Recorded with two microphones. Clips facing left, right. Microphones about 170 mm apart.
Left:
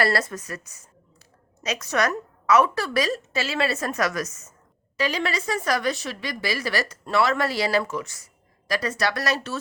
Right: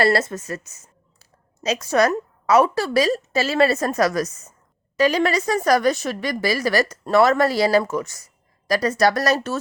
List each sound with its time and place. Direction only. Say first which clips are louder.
0.0 s a woman's voice: right 5 dB; 25° right (ahead or behind)
4.9 s a woman's voice: right 7 dB; 45° right (ahead or behind)